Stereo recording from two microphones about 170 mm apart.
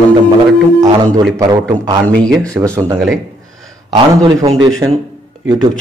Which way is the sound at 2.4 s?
15° right (ahead or behind).